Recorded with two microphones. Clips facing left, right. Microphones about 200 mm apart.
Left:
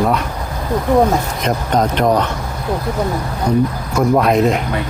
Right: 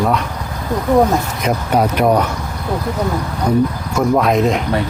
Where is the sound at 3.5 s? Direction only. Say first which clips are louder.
Right 1 dB; 5° right (ahead or behind).